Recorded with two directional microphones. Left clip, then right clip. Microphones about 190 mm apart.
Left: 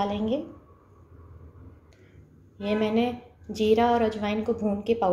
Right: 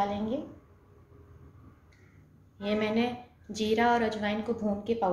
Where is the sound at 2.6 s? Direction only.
25° left (ahead or behind).